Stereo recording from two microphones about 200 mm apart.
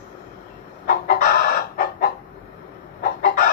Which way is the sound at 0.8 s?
45° left (ahead or behind).